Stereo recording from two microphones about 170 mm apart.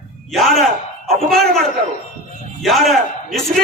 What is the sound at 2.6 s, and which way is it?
Speech, centre (ahead or behind).